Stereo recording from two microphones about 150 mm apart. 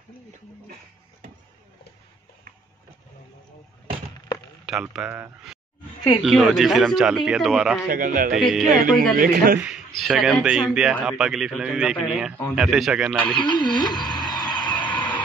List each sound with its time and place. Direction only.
4.6 s a man's voice: 5° right (ahead or behind)
7.9 s a man's voice: 65° right (ahead or behind)
8.4 s a man's voice: centre (ahead or behind)
9.2 s a man's voice: 65° right (ahead or behind)
9.6 s a man's voice: centre (ahead or behind)
13.4 s a sound: 30° left (ahead or behind)
14.9 s music: 10° left (ahead or behind)